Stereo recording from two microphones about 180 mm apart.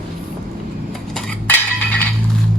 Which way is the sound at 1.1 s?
5° left (ahead or behind).